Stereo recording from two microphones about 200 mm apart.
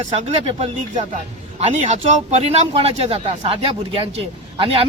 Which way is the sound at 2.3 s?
30° right (ahead or behind).